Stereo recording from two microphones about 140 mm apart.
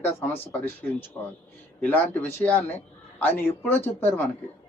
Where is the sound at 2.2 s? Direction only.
15° left (ahead or behind).